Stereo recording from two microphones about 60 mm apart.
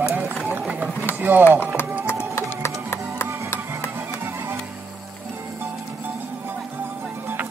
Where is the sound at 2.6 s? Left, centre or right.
Left.